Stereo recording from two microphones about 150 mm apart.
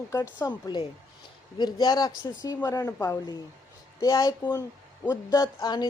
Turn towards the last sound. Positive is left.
turn(degrees=25)  # may be behind; listen again after turning